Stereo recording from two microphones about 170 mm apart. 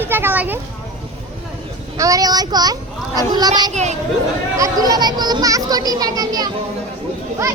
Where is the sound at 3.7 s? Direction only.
40° right (ahead or behind).